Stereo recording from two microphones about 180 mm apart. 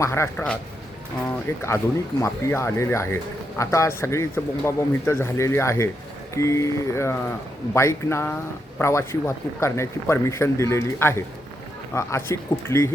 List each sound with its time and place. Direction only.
0.0 s speech: 15° left (ahead or behind)